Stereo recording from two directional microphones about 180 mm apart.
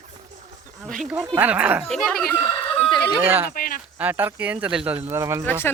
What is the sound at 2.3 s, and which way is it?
Speech, 10° left (ahead or behind).